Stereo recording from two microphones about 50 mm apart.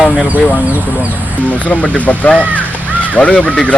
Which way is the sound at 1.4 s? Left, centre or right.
Left.